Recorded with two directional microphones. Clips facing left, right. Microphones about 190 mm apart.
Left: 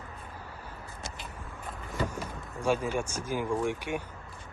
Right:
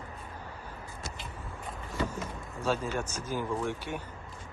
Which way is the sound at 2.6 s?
15° left (ahead or behind).